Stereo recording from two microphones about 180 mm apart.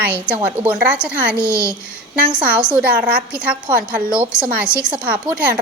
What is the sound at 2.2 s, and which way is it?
A woman's voice, 5° right (ahead or behind).